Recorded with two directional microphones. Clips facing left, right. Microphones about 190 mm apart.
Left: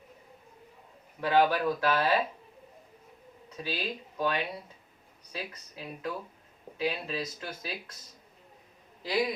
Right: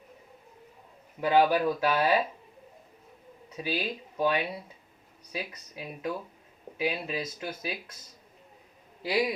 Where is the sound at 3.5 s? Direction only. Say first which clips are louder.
Right 3 dB; 10° right (ahead or behind).